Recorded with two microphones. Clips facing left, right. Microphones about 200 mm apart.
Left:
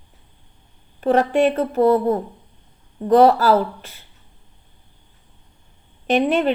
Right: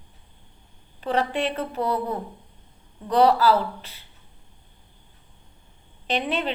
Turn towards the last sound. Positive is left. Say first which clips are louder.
# left 9 dB
turn(degrees=45)  # may be behind; listen again after turning